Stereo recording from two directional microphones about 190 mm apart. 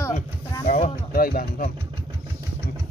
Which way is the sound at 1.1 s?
50° left (ahead or behind).